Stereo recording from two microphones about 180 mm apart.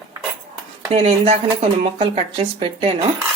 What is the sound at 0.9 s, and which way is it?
Speech, 35° right (ahead or behind).